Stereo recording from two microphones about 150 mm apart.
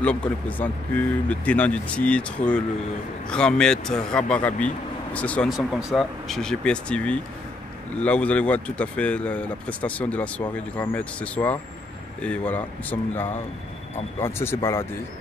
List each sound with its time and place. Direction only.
0.0 s speech: 10° left (ahead or behind)